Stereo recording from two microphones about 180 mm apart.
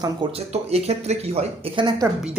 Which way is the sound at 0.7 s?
35° right (ahead or behind).